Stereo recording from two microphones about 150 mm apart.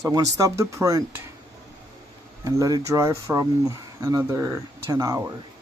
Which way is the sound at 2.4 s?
20° right (ahead or behind).